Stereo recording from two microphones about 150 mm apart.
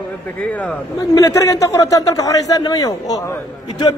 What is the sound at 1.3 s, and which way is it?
Speech, 20° left (ahead or behind).